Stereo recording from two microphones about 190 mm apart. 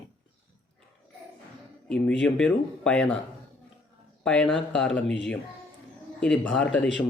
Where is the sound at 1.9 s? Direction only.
5° left (ahead or behind).